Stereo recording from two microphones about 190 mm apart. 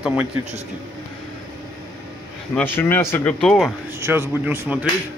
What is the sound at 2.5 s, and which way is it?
Speech, 10° left (ahead or behind).